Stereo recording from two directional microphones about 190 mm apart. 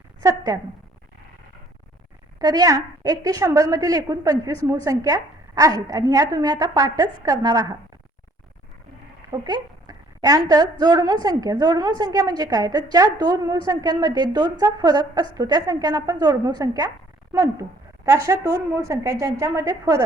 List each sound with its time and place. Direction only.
0.2 s a woman's voice: 20° right (ahead or behind)
2.4 s a woman's voice: 20° right (ahead or behind)
9.3 s a woman's voice: 20° right (ahead or behind)